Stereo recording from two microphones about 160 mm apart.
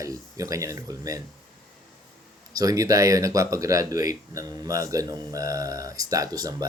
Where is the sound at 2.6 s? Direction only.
20° right (ahead or behind).